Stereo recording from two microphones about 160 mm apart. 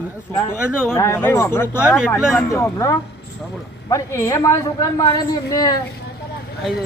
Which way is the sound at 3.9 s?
20° left (ahead or behind).